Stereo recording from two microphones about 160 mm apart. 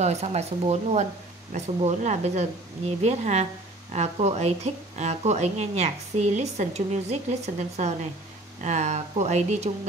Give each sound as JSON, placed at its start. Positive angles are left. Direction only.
{"t": 0.0, "sound": "speech", "side_deg": -40}